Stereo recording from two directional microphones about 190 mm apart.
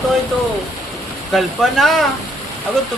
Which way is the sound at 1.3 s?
Centre (ahead or behind).